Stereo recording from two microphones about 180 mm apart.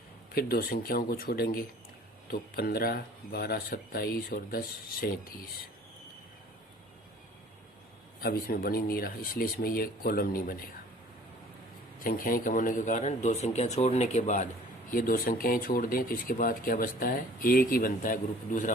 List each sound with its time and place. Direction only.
0.3 s speech: 55° left (ahead or behind)
8.2 s speech: 55° left (ahead or behind)
11.9 s speech: 50° left (ahead or behind)